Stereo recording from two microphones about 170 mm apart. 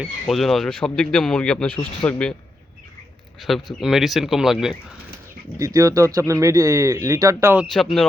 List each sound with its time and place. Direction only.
0.0 s speech: centre (ahead or behind)
3.4 s speech: centre (ahead or behind)
5.5 s speech: 15° right (ahead or behind)
7.7 s speech: centre (ahead or behind)